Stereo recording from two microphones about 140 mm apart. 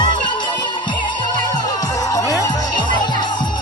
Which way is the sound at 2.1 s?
25° left (ahead or behind).